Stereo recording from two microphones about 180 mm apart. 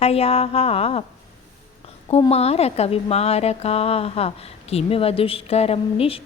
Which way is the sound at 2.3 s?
35° left (ahead or behind).